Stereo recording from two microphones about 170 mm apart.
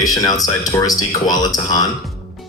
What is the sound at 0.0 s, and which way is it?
Speech, 20° left (ahead or behind).